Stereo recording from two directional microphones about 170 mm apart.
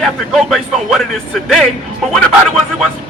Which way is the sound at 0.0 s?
Centre (ahead or behind).